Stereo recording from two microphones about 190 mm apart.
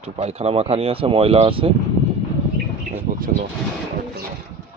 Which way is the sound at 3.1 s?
45° right (ahead or behind).